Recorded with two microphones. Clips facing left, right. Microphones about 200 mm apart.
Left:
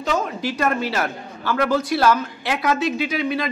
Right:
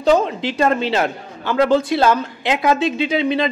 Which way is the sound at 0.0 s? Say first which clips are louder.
Right 7 dB; 30° right (ahead or behind).